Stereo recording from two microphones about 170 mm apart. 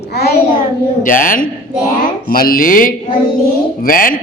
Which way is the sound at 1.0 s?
55° left (ahead or behind).